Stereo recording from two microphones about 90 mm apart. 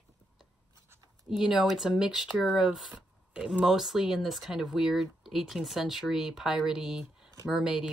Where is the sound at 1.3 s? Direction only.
5° right (ahead or behind).